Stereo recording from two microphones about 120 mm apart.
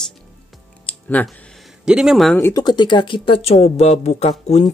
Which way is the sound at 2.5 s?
40° left (ahead or behind).